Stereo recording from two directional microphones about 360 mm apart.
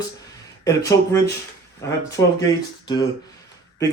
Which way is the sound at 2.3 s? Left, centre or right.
Centre.